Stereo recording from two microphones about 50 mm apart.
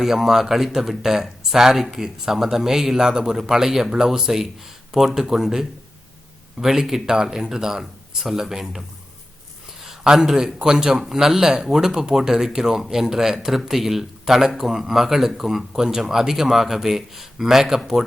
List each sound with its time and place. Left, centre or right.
0.0 s speech: centre
9.9 s speech: centre